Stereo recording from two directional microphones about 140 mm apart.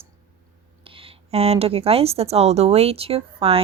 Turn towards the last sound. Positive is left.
turn(degrees=-45)  # may be behind; listen again after turning